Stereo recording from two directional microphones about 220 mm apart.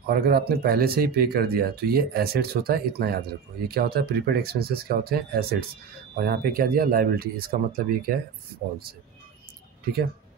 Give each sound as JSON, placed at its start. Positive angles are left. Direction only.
{"t": 0.0, "sound": "speech", "side_deg": -45}